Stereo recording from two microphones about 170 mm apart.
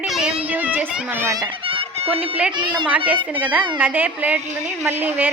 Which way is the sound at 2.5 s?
25° right (ahead or behind).